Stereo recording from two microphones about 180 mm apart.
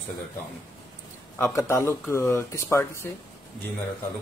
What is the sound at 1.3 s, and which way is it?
Speech, 15° left (ahead or behind).